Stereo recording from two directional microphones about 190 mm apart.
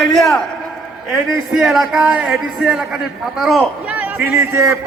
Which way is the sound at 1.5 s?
Centre (ahead or behind).